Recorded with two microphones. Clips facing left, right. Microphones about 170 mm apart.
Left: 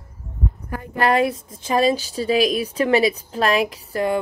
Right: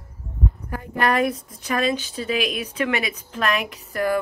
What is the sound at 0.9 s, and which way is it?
A woman's voice, 30° left (ahead or behind).